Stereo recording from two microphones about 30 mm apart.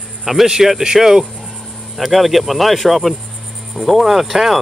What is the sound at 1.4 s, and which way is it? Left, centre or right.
Speech, centre.